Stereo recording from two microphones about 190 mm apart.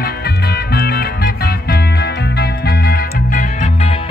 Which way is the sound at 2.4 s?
55° left (ahead or behind).